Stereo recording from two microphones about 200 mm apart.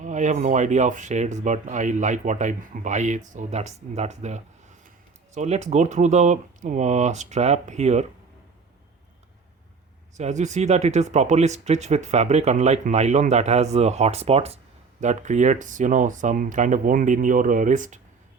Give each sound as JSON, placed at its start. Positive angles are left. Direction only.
{"t": 0.0, "sound": "speech", "side_deg": -40}
{"t": 10.2, "sound": "speech", "side_deg": -35}